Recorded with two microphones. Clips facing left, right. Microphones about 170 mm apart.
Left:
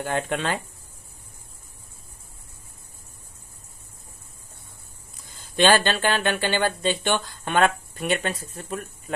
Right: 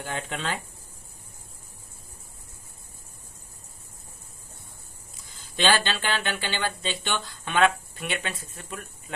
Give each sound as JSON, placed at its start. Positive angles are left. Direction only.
{"t": 0.0, "sound": "speech", "side_deg": 60}
{"t": 5.6, "sound": "speech", "side_deg": 50}